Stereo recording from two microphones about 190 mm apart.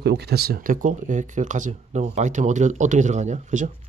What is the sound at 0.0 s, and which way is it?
Speech, 60° right (ahead or behind).